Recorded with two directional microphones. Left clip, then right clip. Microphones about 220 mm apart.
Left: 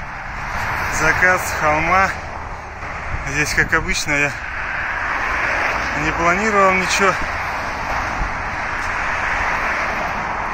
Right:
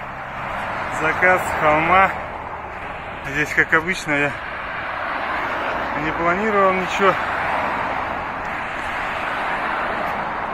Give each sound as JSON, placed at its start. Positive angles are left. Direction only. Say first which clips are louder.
{"t": 1.2, "sound": "speech", "louder": "even", "side_deg": 5}
{"t": 3.3, "sound": "speech", "louder": "even", "side_deg": 5}
{"t": 5.1, "sound": "vehicle", "louder": "left 3 dB", "side_deg": -50}
{"t": 6.0, "sound": "speech", "louder": "left 3 dB", "side_deg": 15}